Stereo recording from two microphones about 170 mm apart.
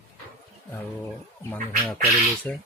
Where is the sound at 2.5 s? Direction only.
10° left (ahead or behind).